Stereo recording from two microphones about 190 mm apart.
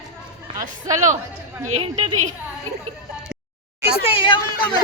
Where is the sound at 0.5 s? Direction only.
40° right (ahead or behind).